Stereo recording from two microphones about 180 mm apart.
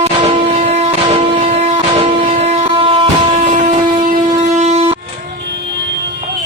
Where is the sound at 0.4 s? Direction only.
40° right (ahead or behind).